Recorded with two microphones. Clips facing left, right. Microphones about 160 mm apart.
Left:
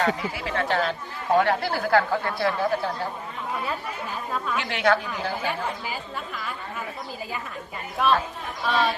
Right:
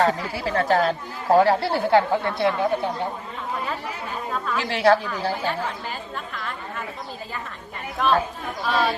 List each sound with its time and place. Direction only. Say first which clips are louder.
0.1 s speech: right 2 dB; 35° right (ahead or behind); by 3.1 s 20° right (ahead or behind)
4.5 s speech: right 5 dB; 35° right (ahead or behind)
5.5 s a woman's voice: right 1 dB; 5° left (ahead or behind)
8.0 s speech: right 1 dB; 5° left (ahead or behind)